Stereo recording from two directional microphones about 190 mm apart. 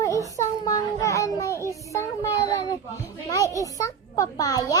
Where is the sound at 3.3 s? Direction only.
15° left (ahead or behind).